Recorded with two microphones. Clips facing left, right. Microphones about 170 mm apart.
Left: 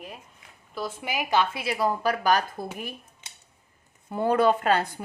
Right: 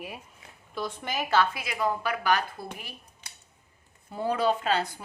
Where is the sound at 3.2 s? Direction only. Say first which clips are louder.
Even; 25° left (ahead or behind).